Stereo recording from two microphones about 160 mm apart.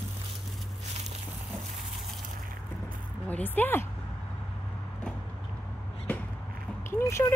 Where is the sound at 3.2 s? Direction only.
10° left (ahead or behind).